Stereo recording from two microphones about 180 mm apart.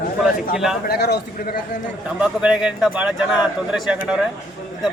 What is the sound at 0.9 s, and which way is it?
Speech, 60° left (ahead or behind).